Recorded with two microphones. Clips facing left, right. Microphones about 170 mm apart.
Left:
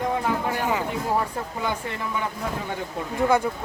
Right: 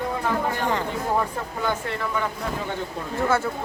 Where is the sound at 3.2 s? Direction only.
15° left (ahead or behind).